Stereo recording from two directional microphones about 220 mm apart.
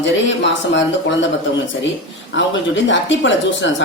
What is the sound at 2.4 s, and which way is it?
Speech, 55° left (ahead or behind).